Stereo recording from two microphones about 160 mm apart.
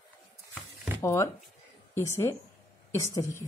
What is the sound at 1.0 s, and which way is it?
A woman's voice, 20° left (ahead or behind).